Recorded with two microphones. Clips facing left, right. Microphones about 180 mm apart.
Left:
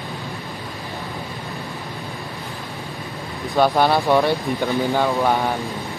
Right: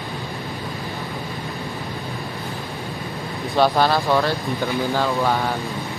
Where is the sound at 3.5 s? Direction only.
15° left (ahead or behind).